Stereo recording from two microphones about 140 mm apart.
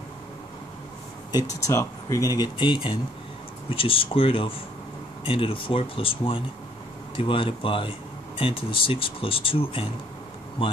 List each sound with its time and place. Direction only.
1.3 s speech: 20° left (ahead or behind); by 9.8 s 40° left (ahead or behind)